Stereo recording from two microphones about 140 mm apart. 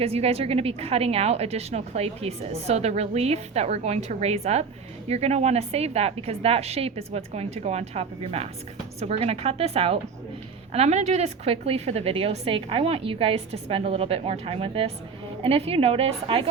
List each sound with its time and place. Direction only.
0.0 s a woman's voice: 45° right (ahead or behind)